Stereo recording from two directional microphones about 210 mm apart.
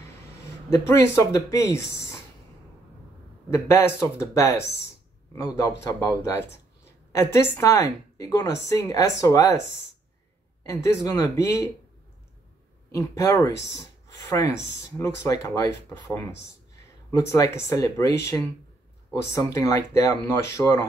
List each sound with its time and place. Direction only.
0.7 s a woman's voice: 15° left (ahead or behind)
3.4 s a woman's voice: 10° left (ahead or behind)
10.6 s a woman's voice: 15° left (ahead or behind)
12.9 s a woman's voice: 15° left (ahead or behind)